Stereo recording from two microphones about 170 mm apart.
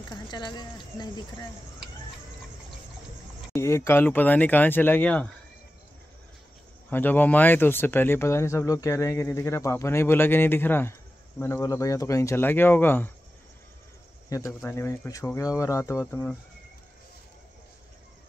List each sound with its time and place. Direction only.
0.1 s speech: 25° left (ahead or behind)
3.5 s speech: 15° left (ahead or behind)
6.9 s speech: 10° left (ahead or behind)
14.3 s speech: 15° left (ahead or behind)